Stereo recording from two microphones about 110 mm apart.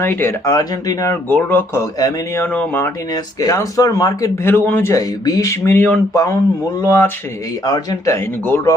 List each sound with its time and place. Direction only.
0.0 s speech: 20° left (ahead or behind)
1.3 s speech: 15° left (ahead or behind)
1.8 s speech: 30° left (ahead or behind)
2.4 s speech: 15° left (ahead or behind)
3.1 s speech: 35° left (ahead or behind)
4.4 s speech: 20° left (ahead or behind)
5.6 s speech: 15° left (ahead or behind)
7.6 s speech: 35° left (ahead or behind)